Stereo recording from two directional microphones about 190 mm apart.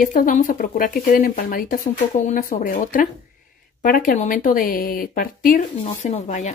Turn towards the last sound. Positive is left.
turn(degrees=40)  # may be behind; listen again after turning